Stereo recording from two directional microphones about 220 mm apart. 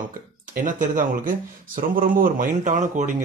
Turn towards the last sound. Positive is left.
turn(degrees=-35)  # may be behind; listen again after turning